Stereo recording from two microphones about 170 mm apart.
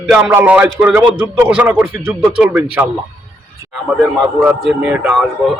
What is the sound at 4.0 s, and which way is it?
A man's voice, 5° right (ahead or behind).